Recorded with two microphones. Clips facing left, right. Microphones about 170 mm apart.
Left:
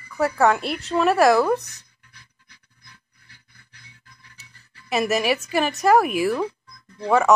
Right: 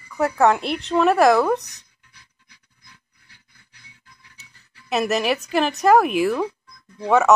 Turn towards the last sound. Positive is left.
turn(degrees=-5)  # may be behind; listen again after turning